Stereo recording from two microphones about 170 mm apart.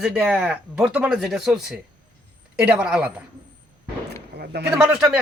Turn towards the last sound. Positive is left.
turn(degrees=-5)  # may be behind; listen again after turning